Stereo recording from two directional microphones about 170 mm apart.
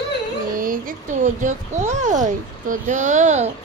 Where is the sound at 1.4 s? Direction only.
45° right (ahead or behind).